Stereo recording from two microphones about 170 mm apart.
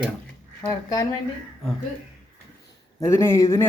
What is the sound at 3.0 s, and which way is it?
Speech, 15° left (ahead or behind).